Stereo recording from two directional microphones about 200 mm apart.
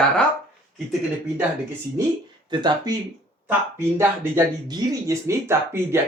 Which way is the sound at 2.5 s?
25° right (ahead or behind).